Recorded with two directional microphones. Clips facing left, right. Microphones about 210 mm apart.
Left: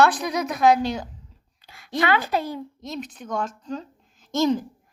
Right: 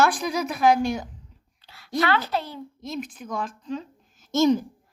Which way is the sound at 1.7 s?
15° left (ahead or behind).